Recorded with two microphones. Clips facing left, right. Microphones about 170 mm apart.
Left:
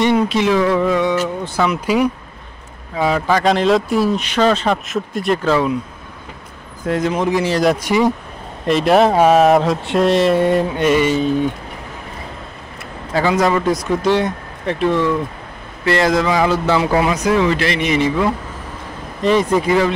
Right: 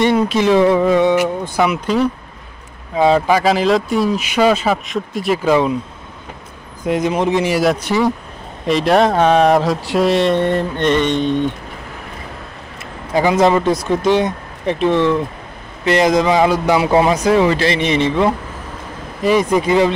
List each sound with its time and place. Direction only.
0.5 s speech: 25° right (ahead or behind)
3.0 s speech: 25° right (ahead or behind)
3.3 s speech: 5° right (ahead or behind)
5.4 s speech: 20° right (ahead or behind)
6.9 s speech: 15° right (ahead or behind)
7.8 s speech: 15° left (ahead or behind)
8.6 s speech: centre (ahead or behind)
13.1 s speech: 20° right (ahead or behind)
17.0 s speech: 30° right (ahead or behind)
19.2 s speech: 15° right (ahead or behind)